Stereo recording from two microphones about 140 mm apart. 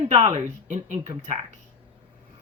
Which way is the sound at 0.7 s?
60° right (ahead or behind).